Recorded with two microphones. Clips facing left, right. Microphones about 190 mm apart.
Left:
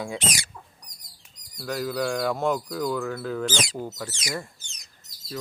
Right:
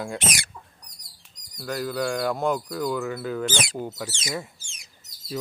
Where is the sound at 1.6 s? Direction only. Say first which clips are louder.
Even; centre (ahead or behind).